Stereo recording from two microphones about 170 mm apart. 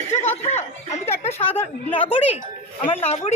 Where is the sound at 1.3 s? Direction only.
10° left (ahead or behind).